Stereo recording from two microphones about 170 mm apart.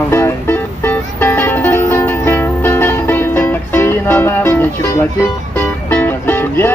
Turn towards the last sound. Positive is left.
turn(degrees=10)  # may be behind; listen again after turning